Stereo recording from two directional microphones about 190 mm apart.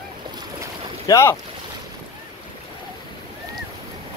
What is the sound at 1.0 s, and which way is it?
Speech, 15° left (ahead or behind).